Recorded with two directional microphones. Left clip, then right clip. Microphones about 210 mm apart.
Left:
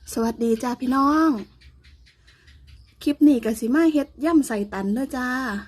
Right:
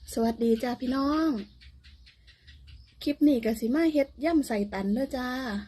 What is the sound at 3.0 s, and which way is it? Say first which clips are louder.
A woman's voice: left 6 dB; 40° left (ahead or behind).